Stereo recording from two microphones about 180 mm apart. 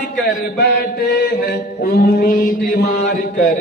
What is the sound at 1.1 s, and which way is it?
Mantra, 55° left (ahead or behind).